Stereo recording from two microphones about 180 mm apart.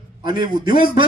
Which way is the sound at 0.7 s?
55° left (ahead or behind).